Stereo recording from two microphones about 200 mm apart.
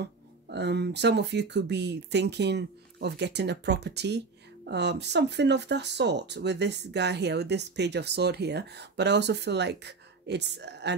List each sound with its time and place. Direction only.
0.0 s speech: 55° right (ahead or behind)